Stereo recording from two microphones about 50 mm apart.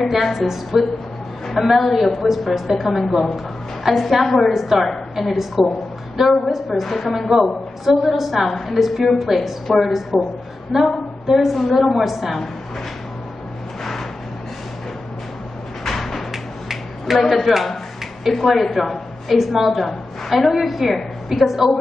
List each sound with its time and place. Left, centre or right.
0.1 s a woman's voice: centre
10.1 s a woman's voice: centre
10.7 s a woman's voice: centre
15.8 s a sound: centre
18.2 s a woman's voice: centre